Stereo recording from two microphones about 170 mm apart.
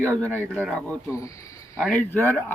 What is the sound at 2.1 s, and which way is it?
Speech, 10° left (ahead or behind).